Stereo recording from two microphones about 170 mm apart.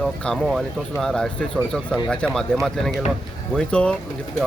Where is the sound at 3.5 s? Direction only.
5° left (ahead or behind).